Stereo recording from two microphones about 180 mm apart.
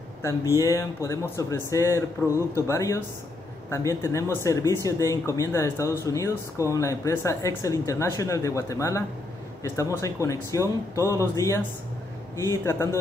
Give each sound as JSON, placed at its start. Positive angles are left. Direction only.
{"t": 0.2, "sound": "speech", "side_deg": 15}